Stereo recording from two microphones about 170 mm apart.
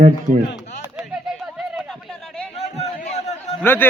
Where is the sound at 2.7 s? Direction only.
40° left (ahead or behind).